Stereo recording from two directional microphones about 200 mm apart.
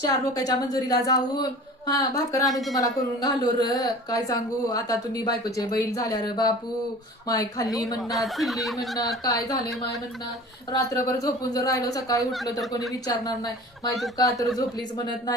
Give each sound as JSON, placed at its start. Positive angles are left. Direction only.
{"t": 0.0, "sound": "a woman's voice", "side_deg": 20}
{"t": 2.5, "sound": "speech", "side_deg": 0}
{"t": 2.7, "sound": "a woman's voice", "side_deg": 15}
{"t": 8.1, "sound": "speech", "side_deg": 0}
{"t": 9.2, "sound": "a woman's voice", "side_deg": 15}
{"t": 12.2, "sound": "speech", "side_deg": 0}
{"t": 12.9, "sound": "a woman's voice", "side_deg": 20}